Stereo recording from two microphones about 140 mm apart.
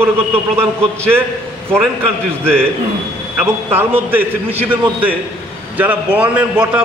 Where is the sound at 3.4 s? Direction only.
15° right (ahead or behind).